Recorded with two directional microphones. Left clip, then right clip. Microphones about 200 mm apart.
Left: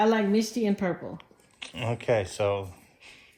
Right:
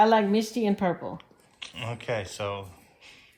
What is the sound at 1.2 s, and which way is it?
Speech, 5° right (ahead or behind).